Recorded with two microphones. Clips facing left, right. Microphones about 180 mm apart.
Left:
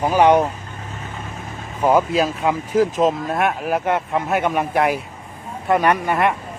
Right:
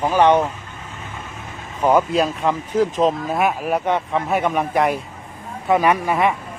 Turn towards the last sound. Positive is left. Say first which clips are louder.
# even
turn(degrees=0)  # may be behind; listen again after turning